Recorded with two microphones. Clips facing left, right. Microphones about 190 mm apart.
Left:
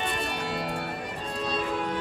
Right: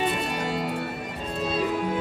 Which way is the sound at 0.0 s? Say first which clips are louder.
Right 4 dB; 5° right (ahead or behind).